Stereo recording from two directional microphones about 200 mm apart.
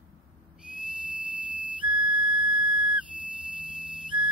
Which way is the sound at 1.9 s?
25° right (ahead or behind).